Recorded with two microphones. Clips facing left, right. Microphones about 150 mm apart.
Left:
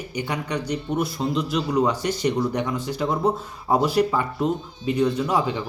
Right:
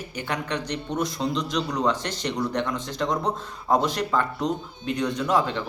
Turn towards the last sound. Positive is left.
turn(degrees=10)  # may be behind; listen again after turning